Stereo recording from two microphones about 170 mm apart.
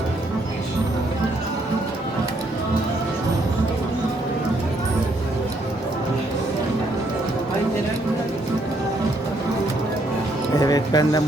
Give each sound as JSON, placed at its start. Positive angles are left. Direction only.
{"t": 10.6, "sound": "music", "side_deg": 20}